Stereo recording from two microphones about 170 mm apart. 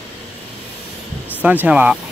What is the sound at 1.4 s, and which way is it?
Speech, 10° right (ahead or behind).